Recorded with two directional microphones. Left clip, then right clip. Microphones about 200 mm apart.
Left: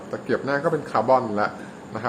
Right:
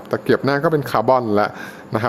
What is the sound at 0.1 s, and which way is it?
A man's voice, 55° right (ahead or behind).